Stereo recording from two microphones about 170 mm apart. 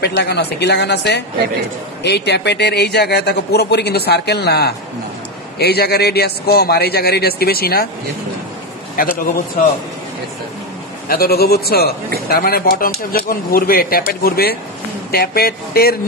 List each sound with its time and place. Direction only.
0.0 s a woman's voice: 75° left (ahead or behind)
9.0 s speech: 55° left (ahead or behind)
11.1 s a man's voice: 65° left (ahead or behind)